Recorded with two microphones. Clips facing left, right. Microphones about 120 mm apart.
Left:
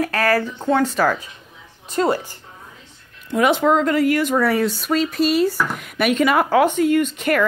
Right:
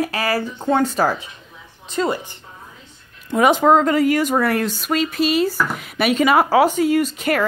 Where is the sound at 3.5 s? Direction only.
40° right (ahead or behind).